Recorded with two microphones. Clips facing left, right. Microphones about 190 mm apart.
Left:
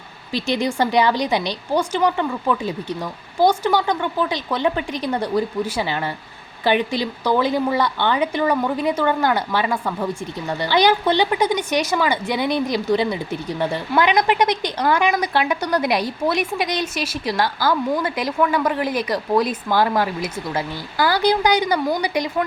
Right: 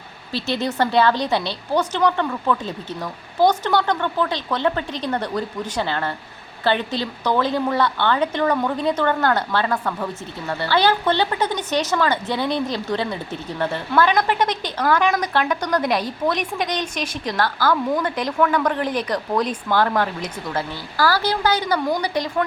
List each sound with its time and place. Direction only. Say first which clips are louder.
0.3 s speech: left 2 dB; 15° left (ahead or behind)